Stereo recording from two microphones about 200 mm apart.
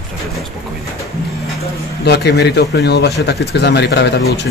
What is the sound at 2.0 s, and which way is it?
Speech, 55° left (ahead or behind).